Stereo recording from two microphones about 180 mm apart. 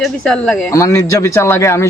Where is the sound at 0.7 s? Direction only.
15° left (ahead or behind).